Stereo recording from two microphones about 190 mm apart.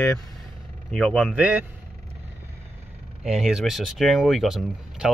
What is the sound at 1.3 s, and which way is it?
Speech, 5° right (ahead or behind).